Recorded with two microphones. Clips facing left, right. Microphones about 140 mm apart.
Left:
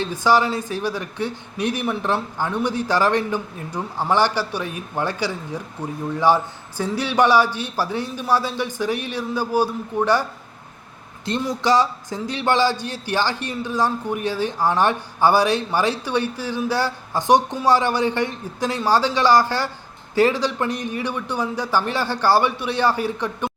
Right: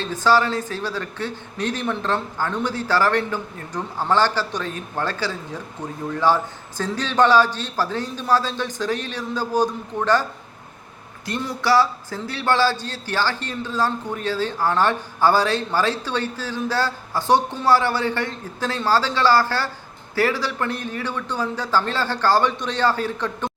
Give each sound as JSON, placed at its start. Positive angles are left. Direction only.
{"t": 0.0, "sound": "a man's voice", "side_deg": 15}
{"t": 11.3, "sound": "a man's voice", "side_deg": 20}